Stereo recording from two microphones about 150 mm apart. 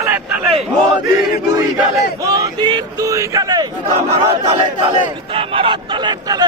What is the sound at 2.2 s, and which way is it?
A man's voice, 25° right (ahead or behind).